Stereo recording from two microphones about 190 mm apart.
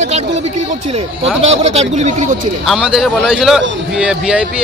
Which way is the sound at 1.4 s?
35° right (ahead or behind).